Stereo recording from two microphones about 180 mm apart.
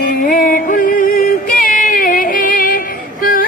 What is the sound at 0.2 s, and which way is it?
Music, 50° left (ahead or behind).